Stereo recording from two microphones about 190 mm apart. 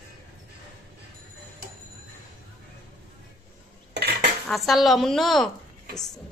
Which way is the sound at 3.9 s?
60° right (ahead or behind).